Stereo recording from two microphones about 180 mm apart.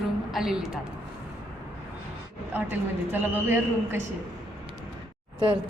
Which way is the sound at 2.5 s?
10° right (ahead or behind).